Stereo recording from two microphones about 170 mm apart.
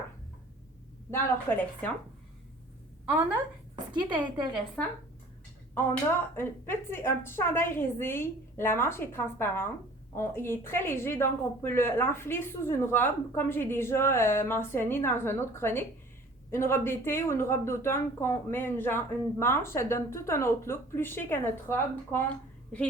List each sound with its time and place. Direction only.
1.1 s speech: 10° left (ahead or behind)
3.1 s a woman's voice: 10° right (ahead or behind)
4.8 s speech: 10° left (ahead or behind)